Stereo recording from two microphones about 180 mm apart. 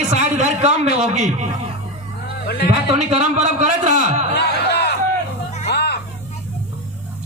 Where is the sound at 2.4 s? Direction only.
60° left (ahead or behind).